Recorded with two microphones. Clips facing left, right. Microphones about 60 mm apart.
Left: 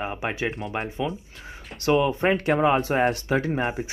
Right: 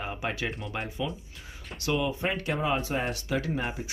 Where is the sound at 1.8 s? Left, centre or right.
Left.